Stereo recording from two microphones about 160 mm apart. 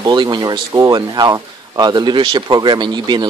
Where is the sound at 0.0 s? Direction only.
25° right (ahead or behind).